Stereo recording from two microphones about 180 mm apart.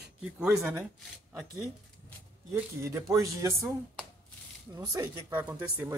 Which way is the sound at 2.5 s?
15° right (ahead or behind).